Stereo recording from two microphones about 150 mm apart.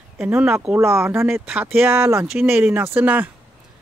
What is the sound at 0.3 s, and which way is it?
Speech, 15° right (ahead or behind).